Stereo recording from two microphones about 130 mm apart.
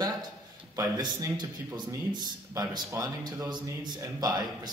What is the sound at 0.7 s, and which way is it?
A man's voice, 25° right (ahead or behind).